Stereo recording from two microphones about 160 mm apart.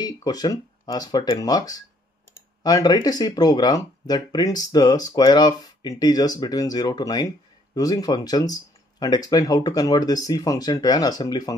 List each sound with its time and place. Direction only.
0.0 s speech: 25° left (ahead or behind)